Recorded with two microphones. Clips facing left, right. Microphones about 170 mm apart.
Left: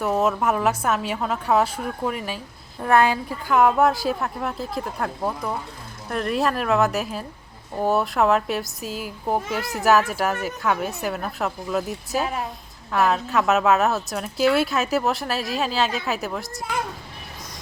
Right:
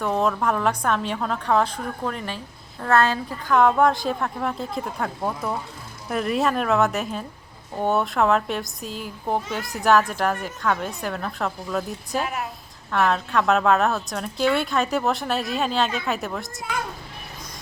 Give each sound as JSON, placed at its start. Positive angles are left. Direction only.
{"t": 0.0, "sound": "a woman's voice", "side_deg": 5}
{"t": 12.2, "sound": "a woman's voice", "side_deg": 30}
{"t": 12.9, "sound": "a woman's voice", "side_deg": 5}